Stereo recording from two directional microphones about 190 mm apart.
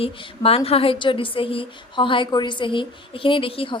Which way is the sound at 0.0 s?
30° left (ahead or behind).